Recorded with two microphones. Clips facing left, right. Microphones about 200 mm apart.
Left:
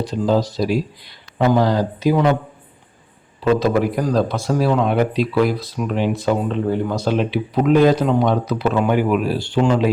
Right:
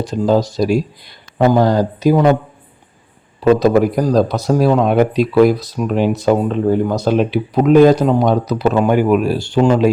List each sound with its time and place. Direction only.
0.0 s a man's voice: 45° right (ahead or behind)
3.4 s a man's voice: 45° right (ahead or behind)